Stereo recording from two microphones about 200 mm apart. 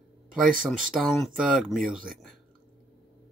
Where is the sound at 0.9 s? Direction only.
Centre (ahead or behind).